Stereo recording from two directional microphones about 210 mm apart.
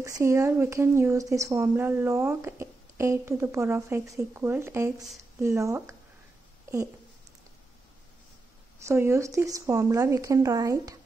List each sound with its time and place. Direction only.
0.0 s speech: 15° right (ahead or behind)
8.8 s speech: 10° right (ahead or behind)